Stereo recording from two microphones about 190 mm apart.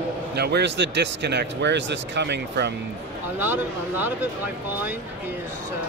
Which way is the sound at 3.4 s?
10° right (ahead or behind).